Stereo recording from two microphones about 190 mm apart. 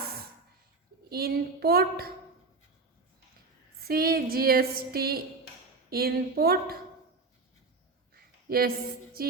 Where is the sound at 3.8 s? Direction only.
50° right (ahead or behind).